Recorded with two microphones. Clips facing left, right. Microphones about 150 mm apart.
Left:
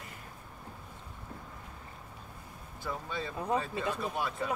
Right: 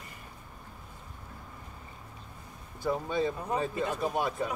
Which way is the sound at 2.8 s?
15° right (ahead or behind).